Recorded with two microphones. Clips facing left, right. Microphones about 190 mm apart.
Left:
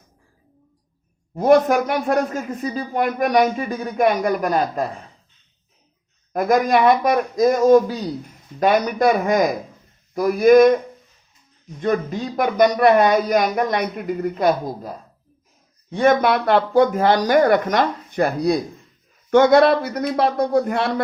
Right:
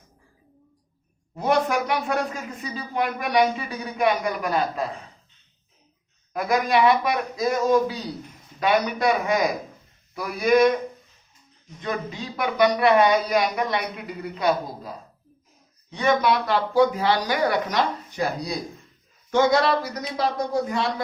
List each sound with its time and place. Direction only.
1.4 s speech: 45° left (ahead or behind)
6.3 s speech: 45° left (ahead or behind)
11.8 s speech: 50° left (ahead or behind)